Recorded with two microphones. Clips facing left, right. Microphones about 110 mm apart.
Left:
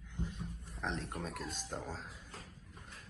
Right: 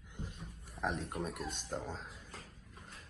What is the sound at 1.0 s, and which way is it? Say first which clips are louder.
Speech: right 2 dB; centre (ahead or behind).